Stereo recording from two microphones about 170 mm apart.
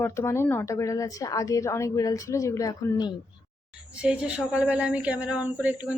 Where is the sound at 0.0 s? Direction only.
15° left (ahead or behind).